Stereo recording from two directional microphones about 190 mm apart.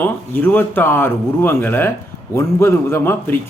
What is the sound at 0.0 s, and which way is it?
A man's voice, 10° left (ahead or behind).